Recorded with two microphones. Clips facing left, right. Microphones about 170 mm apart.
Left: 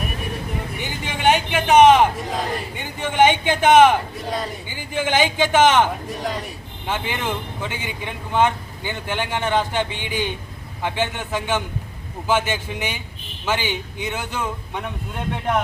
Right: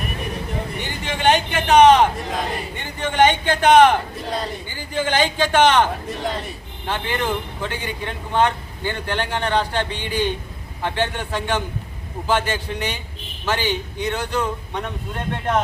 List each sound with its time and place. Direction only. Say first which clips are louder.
0.8 s vehicle: even; 10° left (ahead or behind)
2.7 s a man's voice: even; 10° left (ahead or behind)